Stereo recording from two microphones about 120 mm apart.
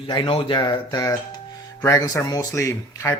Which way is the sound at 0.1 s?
45° left (ahead or behind).